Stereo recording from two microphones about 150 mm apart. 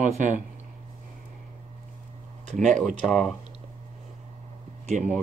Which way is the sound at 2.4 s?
55° right (ahead or behind).